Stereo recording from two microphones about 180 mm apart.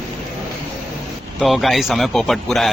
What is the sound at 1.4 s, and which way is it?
A man's voice, centre (ahead or behind).